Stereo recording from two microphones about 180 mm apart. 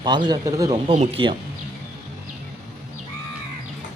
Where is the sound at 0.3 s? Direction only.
20° right (ahead or behind).